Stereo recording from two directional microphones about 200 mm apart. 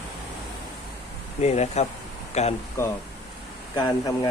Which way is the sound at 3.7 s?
20° left (ahead or behind).